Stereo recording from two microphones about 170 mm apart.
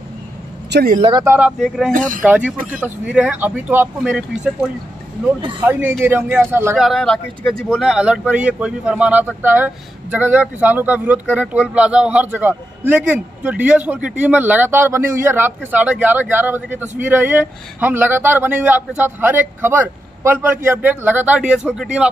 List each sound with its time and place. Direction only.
0.7 s speech: 75° right (ahead or behind)
1.2 s speech: 15° right (ahead or behind)
1.9 s speech: 50° right (ahead or behind)
2.2 s speech: 10° right (ahead or behind)
6.8 s speech: centre (ahead or behind)